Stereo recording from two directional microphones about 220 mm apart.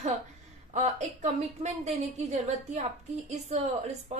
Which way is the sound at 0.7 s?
30° right (ahead or behind).